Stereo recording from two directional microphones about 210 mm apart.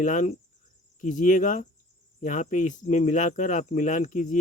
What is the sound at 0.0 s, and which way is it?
Speech, 35° left (ahead or behind).